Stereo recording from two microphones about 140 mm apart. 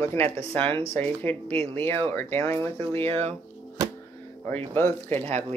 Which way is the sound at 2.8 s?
45° right (ahead or behind).